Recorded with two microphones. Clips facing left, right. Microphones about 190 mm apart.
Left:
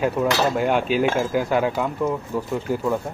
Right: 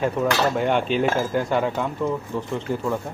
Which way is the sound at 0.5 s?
5° left (ahead or behind).